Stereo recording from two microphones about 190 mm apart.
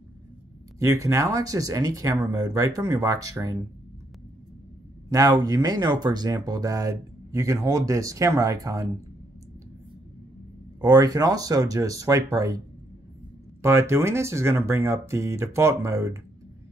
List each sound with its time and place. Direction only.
0.7 s speech: 15° right (ahead or behind)
5.1 s speech: 20° right (ahead or behind)
10.8 s speech: 20° right (ahead or behind)